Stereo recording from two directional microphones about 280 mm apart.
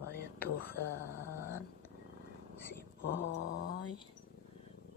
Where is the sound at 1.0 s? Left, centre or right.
Centre.